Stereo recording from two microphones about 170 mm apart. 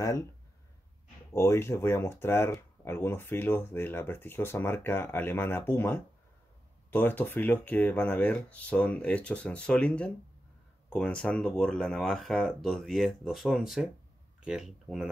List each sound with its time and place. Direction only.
0.0 s speech: 20° left (ahead or behind)
1.3 s speech: 15° left (ahead or behind); by 15.0 s centre (ahead or behind)